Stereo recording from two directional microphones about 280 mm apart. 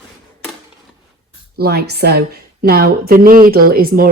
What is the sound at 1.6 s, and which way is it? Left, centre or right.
A woman's voice, right.